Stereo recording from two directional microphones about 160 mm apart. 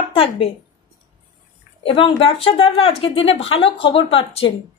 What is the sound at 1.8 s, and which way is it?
A woman's voice, 30° left (ahead or behind).